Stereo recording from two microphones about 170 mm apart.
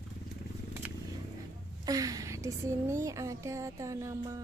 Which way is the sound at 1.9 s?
20° right (ahead or behind).